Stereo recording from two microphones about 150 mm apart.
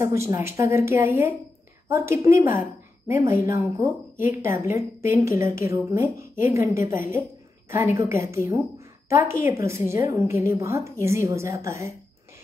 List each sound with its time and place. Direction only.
0.0 s a woman's voice: 20° right (ahead or behind)